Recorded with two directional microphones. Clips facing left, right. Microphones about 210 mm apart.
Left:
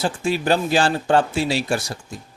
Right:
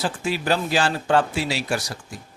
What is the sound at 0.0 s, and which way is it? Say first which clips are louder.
Speech: left 3 dB; 25° left (ahead or behind).